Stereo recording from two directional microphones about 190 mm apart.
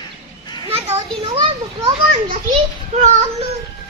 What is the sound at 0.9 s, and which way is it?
Children playing, 30° right (ahead or behind).